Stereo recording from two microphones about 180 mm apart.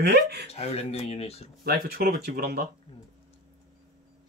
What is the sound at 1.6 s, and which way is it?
Speech, 55° right (ahead or behind).